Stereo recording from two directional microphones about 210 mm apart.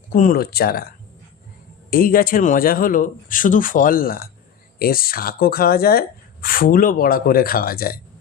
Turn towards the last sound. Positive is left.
turn(degrees=45)  # may be behind; listen again after turning